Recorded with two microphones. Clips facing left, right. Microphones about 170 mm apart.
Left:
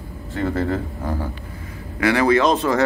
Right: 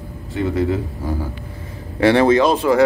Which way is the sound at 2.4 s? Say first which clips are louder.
Right 3 dB; 10° right (ahead or behind).